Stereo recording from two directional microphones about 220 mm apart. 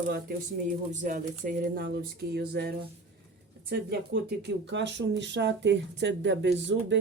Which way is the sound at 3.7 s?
50° right (ahead or behind).